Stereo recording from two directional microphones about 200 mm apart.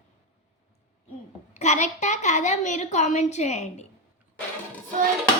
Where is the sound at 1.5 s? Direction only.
35° left (ahead or behind).